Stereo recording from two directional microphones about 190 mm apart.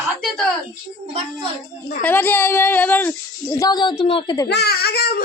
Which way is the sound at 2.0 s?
10° left (ahead or behind).